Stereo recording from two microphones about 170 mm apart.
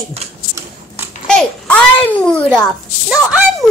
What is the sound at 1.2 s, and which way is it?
A child's voice, 5° left (ahead or behind).